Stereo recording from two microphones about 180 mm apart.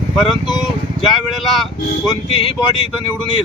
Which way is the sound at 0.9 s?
Centre (ahead or behind).